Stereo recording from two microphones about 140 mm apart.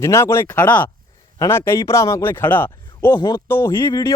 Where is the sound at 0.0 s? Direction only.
20° left (ahead or behind).